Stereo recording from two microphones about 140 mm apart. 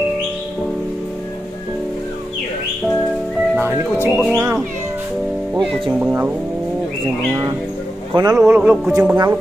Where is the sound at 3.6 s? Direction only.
15° right (ahead or behind).